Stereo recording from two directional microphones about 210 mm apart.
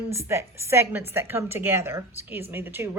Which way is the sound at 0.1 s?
10° right (ahead or behind).